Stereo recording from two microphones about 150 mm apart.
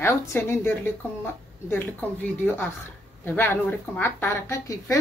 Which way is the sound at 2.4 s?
15° left (ahead or behind).